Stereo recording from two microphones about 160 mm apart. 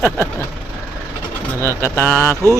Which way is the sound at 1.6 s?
15° left (ahead or behind).